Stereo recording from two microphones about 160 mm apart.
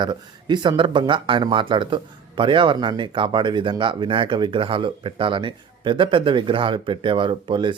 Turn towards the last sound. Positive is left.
turn(degrees=-30)  # may be behind; listen again after turning